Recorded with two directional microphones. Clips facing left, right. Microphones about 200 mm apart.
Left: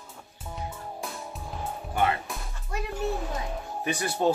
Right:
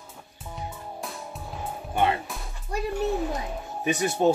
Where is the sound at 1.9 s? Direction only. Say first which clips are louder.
Right 2 dB; 20° right (ahead or behind).